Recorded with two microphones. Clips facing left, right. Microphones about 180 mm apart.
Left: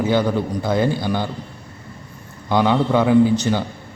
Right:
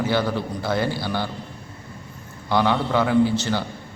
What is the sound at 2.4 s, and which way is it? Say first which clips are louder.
A man's voice: left 4 dB; 15° left (ahead or behind).